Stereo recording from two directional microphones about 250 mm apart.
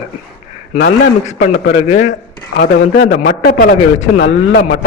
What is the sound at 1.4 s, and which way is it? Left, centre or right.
Speech, left.